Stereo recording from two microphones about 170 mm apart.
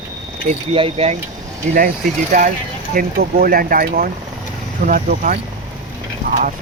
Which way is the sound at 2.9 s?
60° right (ahead or behind).